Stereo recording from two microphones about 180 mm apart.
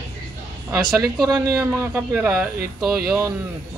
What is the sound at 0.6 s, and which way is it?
Speech, 5° right (ahead or behind).